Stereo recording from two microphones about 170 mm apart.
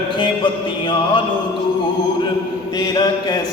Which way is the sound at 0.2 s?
30° left (ahead or behind).